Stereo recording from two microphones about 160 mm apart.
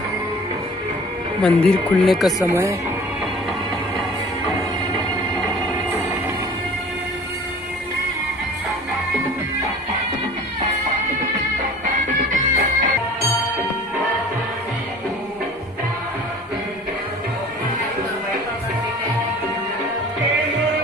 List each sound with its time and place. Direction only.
1.4 s speech: 5° left (ahead or behind)
2.4 s speech: 15° right (ahead or behind)
12.3 s music: 55° right (ahead or behind)